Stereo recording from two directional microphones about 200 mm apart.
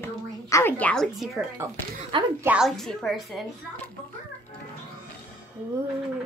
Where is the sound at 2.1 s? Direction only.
25° right (ahead or behind).